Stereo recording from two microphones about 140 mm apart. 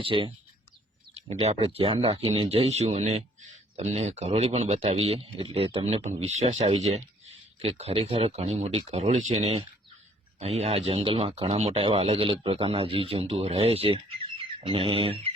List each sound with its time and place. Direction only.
0.0 s speech: 40° right (ahead or behind)
1.1 s a sound: 50° right (ahead or behind)
1.5 s speech: 40° right (ahead or behind)